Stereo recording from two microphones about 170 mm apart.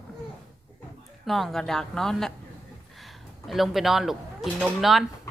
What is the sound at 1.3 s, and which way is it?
Speech, centre (ahead or behind).